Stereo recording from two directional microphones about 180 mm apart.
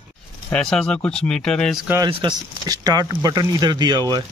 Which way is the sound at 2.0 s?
25° right (ahead or behind).